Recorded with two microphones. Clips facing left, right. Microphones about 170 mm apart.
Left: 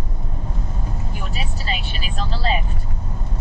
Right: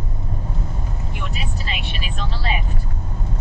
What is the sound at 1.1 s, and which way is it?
Vehicle, 35° left (ahead or behind).